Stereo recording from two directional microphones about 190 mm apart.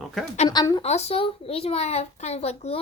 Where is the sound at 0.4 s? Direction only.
20° left (ahead or behind).